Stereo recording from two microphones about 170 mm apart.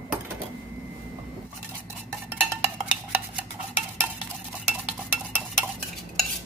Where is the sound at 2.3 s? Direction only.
10° right (ahead or behind).